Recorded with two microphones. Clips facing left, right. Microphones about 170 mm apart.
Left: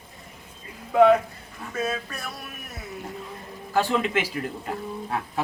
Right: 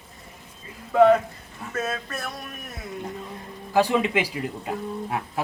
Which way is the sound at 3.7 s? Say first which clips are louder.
Right 2 dB; 15° right (ahead or behind).